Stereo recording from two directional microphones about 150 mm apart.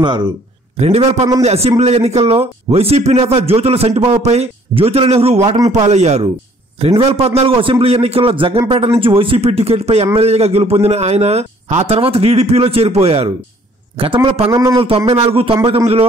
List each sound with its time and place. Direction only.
0.0 s a man's voice: 30° right (ahead or behind)
0.7 s a man's voice: 45° right (ahead or behind)
14.5 s a man's voice: 20° right (ahead or behind)
14.8 s a man's voice: 40° right (ahead or behind)